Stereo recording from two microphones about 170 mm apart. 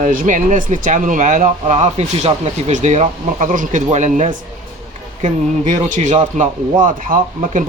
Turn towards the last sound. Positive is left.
turn(degrees=-50)  # may be behind; listen again after turning